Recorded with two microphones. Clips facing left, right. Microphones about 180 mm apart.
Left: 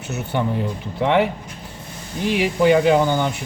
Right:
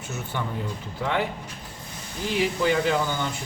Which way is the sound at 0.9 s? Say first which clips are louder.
Left 9 dB; 75° left (ahead or behind).